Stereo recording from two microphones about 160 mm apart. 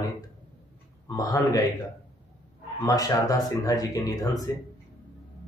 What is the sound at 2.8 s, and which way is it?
Speech, 25° left (ahead or behind).